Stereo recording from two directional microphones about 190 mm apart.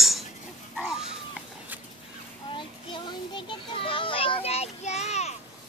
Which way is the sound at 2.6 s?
25° left (ahead or behind).